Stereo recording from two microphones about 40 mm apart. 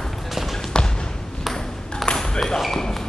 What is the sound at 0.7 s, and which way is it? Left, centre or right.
Basketball bounce, left.